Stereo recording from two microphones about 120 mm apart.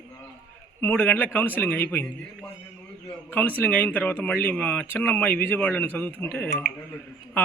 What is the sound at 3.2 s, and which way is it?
A man's voice, 15° left (ahead or behind).